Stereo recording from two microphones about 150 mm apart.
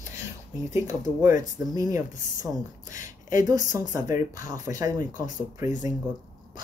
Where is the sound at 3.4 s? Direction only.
25° right (ahead or behind).